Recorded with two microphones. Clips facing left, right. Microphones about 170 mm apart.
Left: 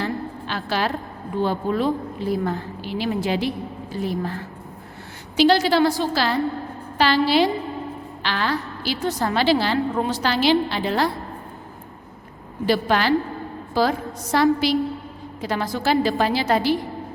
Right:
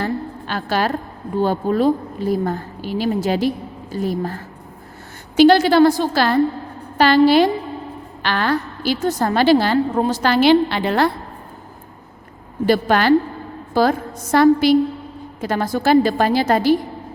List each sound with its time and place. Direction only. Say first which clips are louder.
0.0 s a sound: right 3 dB; 50° right (ahead or behind)
1.4 s a woman's voice: right 4 dB; 40° right (ahead or behind); by 11.1 s 60° right (ahead or behind)
12.6 s a woman's voice: right 5 dB; 50° right (ahead or behind)